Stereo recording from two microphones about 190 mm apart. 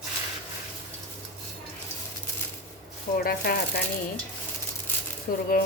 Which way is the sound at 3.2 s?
50° left (ahead or behind).